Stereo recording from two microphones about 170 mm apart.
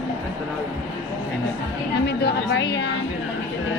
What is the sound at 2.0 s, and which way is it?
Speech, 75° left (ahead or behind).